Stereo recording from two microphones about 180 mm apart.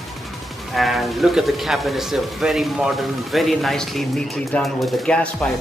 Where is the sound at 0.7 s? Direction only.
Centre (ahead or behind).